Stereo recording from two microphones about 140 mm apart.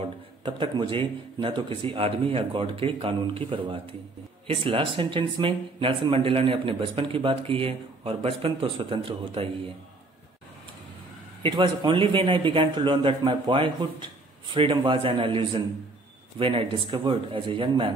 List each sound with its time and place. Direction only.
0.0 s speech: 40° right (ahead or behind)
11.4 s speech: 35° right (ahead or behind)